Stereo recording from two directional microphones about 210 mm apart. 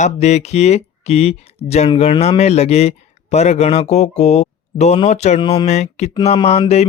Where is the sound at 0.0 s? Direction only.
35° left (ahead or behind).